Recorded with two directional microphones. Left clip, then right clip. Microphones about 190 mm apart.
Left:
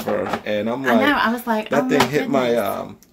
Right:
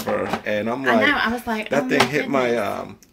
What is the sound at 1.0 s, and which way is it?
Speech, 40° left (ahead or behind).